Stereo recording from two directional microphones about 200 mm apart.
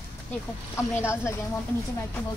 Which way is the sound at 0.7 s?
15° left (ahead or behind).